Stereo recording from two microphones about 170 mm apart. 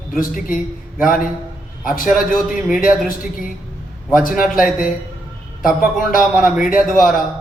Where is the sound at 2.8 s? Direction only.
55° left (ahead or behind).